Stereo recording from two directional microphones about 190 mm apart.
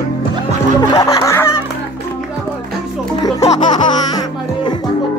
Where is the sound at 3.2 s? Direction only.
20° left (ahead or behind).